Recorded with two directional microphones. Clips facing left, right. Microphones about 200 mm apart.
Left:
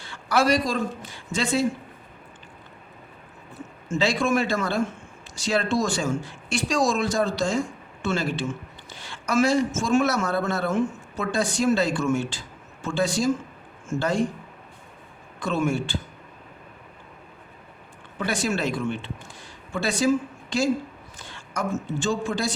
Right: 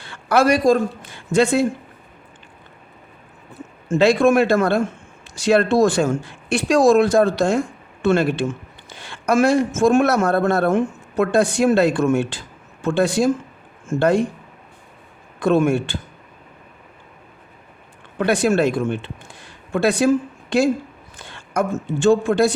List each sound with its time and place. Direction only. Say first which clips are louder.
0.0 s speech: right 6 dB; 55° right (ahead or behind)
3.8 s a man's voice: right 9 dB; 60° right (ahead or behind)
15.4 s a man's voice: right 8 dB; 55° right (ahead or behind)
18.2 s a man's voice: right 9 dB; 60° right (ahead or behind)